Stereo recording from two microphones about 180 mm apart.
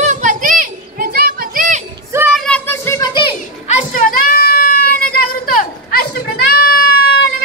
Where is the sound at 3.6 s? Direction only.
50° left (ahead or behind).